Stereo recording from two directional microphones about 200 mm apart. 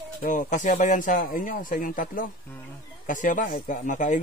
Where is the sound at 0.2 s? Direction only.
40° left (ahead or behind).